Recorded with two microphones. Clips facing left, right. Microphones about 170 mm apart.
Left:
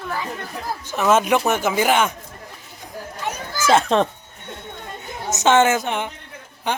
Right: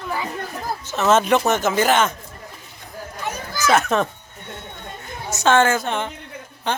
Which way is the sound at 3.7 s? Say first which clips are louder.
Left 2 dB; 30° left (ahead or behind).